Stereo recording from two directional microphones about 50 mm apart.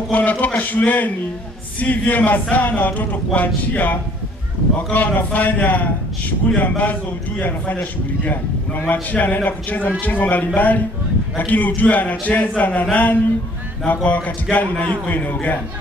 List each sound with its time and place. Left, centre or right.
0.1 s a man's voice: left